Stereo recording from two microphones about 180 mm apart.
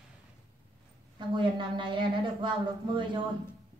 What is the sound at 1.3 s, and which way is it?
A man's voice, 25° right (ahead or behind).